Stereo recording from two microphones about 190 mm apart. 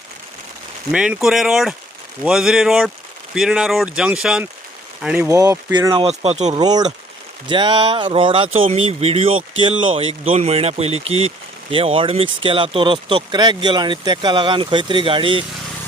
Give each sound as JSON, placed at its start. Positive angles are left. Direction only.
{"t": 0.9, "sound": "speech", "side_deg": -5}
{"t": 6.6, "sound": "speech", "side_deg": -20}